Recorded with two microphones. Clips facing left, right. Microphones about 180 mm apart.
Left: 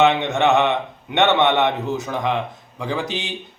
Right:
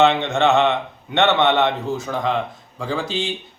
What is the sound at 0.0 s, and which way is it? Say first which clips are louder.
A man's voice: even; 15° left (ahead or behind).